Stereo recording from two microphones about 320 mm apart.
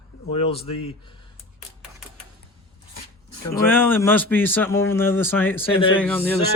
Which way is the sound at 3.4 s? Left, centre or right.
Centre.